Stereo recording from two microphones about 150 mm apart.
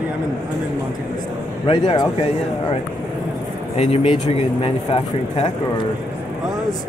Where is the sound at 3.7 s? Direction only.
40° left (ahead or behind).